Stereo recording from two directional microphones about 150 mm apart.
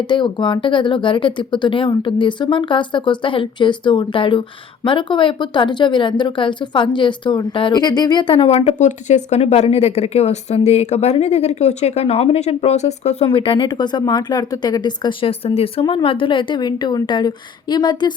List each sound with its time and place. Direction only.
0.1 s speech: 30° left (ahead or behind)